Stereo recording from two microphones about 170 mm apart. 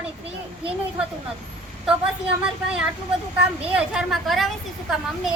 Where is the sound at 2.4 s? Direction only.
5° right (ahead or behind).